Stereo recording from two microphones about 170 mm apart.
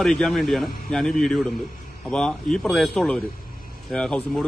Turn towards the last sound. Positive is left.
turn(degrees=5)  # may be behind; listen again after turning